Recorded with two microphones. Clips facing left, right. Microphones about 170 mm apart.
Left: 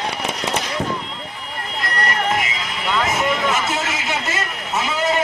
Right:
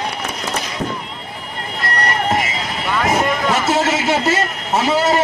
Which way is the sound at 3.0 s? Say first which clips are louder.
Right 5 dB; 40° right (ahead or behind).